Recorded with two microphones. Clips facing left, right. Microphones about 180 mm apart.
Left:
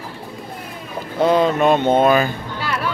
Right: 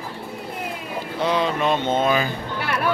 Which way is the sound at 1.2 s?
45° left (ahead or behind).